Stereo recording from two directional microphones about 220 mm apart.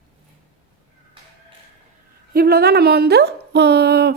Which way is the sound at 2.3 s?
45° right (ahead or behind).